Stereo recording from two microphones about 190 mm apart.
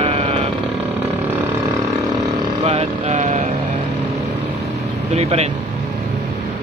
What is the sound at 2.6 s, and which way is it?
Vehicle, 35° right (ahead or behind).